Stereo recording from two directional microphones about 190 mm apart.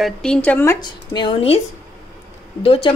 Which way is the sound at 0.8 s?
25° left (ahead or behind).